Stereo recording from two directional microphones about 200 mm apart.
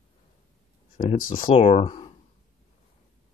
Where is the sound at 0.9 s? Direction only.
45° left (ahead or behind).